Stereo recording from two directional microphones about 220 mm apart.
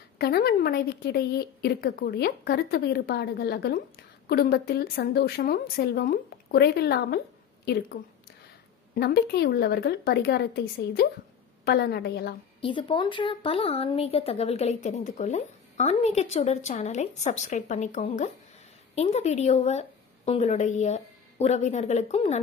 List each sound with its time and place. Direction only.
0.2 s a woman's voice: 45° left (ahead or behind)
12.5 s a woman's voice: 25° left (ahead or behind)